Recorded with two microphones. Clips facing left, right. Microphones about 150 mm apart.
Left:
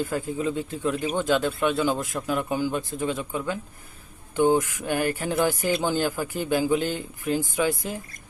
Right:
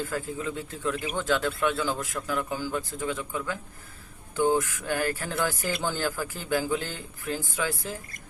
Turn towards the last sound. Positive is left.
turn(degrees=15)  # may be behind; listen again after turning